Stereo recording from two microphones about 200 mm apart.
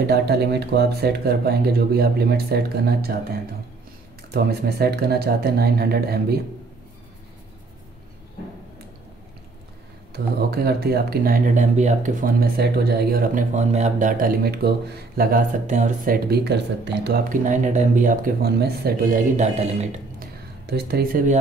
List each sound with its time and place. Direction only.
0.0 s speech: 55° right (ahead or behind)
4.3 s speech: 50° right (ahead or behind)
10.1 s speech: 50° right (ahead or behind)
16.3 s speech: 55° right (ahead or behind)
17.5 s speech: 40° right (ahead or behind)
20.2 s a sound: 55° right (ahead or behind)